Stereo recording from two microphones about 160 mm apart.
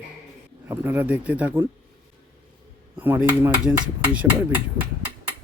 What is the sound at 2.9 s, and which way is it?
Speech, 10° right (ahead or behind).